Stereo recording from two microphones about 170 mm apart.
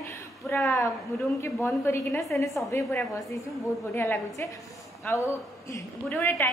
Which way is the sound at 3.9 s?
15° left (ahead or behind).